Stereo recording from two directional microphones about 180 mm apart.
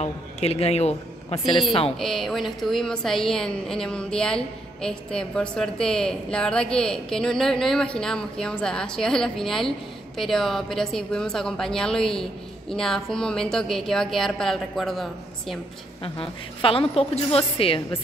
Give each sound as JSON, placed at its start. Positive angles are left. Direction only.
{"t": 0.0, "sound": "a woman's voice", "side_deg": 35}
{"t": 2.0, "sound": "a woman's voice", "side_deg": 0}
{"t": 16.0, "sound": "a woman's voice", "side_deg": 30}